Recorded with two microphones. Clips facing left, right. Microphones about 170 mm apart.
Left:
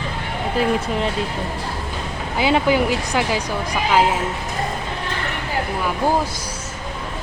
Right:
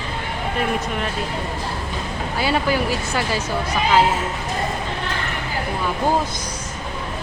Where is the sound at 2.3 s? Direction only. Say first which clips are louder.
Left 4 dB; 20° left (ahead or behind).